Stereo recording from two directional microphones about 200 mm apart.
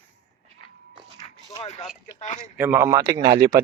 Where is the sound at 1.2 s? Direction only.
30° left (ahead or behind).